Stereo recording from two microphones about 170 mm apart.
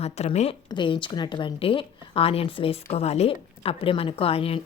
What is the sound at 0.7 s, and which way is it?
Speech, 30° left (ahead or behind).